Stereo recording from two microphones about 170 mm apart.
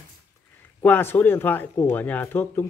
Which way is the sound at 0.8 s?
10° left (ahead or behind).